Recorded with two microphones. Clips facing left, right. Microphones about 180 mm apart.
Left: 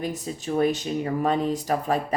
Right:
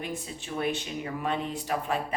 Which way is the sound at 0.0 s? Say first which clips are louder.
Left 6 dB; 40° left (ahead or behind).